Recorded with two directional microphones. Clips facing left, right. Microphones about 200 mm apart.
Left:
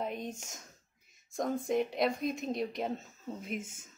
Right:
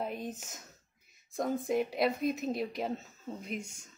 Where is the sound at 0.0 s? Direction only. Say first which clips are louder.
Even; 5° right (ahead or behind).